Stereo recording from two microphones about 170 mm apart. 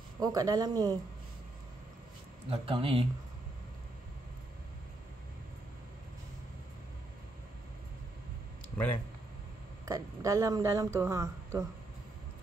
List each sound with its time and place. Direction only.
0.2 s speech: 20° right (ahead or behind)
2.5 s speech: 35° right (ahead or behind)
9.8 s speech: 20° right (ahead or behind)